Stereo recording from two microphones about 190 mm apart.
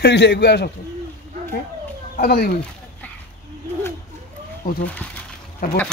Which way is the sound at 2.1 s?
55° left (ahead or behind).